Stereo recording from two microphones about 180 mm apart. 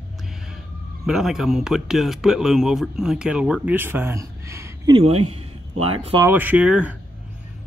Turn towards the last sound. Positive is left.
turn(degrees=-5)  # may be behind; listen again after turning